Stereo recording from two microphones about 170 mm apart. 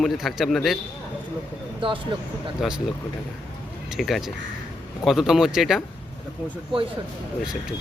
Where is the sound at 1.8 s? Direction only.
30° right (ahead or behind).